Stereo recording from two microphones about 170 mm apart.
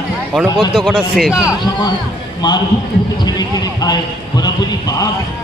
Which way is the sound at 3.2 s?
25° left (ahead or behind).